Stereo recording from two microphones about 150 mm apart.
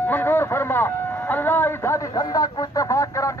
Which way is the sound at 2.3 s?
25° left (ahead or behind).